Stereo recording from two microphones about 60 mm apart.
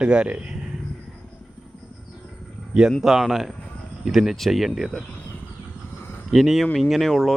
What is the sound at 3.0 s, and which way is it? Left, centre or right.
Speech, centre.